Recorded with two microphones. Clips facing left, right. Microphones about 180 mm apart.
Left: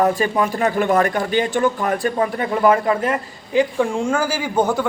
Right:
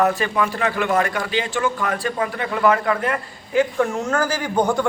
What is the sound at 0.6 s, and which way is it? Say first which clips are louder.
A man's voice: left 5 dB; 35° left (ahead or behind).